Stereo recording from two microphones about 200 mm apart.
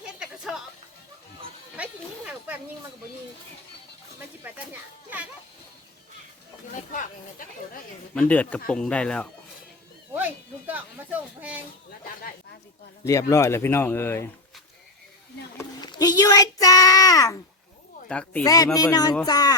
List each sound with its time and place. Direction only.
0.0 s music: centre (ahead or behind)
1.7 s a sound: 5° right (ahead or behind)
4.4 s speech: 10° right (ahead or behind)
6.9 s speech: 45° left (ahead or behind)
8.1 s speech: 5° left (ahead or behind)
10.2 s a sound: 10° right (ahead or behind)
13.1 s speech: 15° left (ahead or behind)
15.5 s a child's voice: 20° left (ahead or behind)
18.1 s speech: 5° left (ahead or behind)
18.4 s speech: 20° left (ahead or behind)